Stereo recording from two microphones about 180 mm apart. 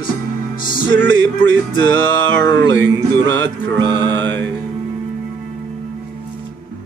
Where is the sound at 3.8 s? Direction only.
25° right (ahead or behind).